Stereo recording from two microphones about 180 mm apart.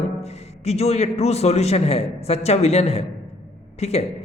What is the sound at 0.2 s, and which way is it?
A woman's voice, 35° left (ahead or behind).